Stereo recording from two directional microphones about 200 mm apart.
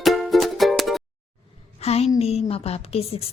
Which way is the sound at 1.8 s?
30° left (ahead or behind).